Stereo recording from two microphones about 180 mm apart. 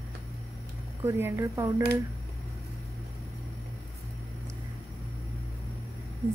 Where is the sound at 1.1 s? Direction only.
15° right (ahead or behind).